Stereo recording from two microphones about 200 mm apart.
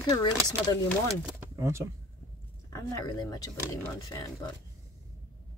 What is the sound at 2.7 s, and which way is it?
Speech, 20° left (ahead or behind).